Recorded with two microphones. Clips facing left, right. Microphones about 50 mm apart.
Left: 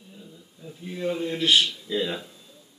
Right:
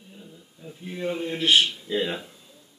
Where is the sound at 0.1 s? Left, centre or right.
Centre.